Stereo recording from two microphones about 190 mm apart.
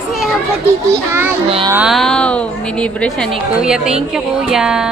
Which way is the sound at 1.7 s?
10° right (ahead or behind).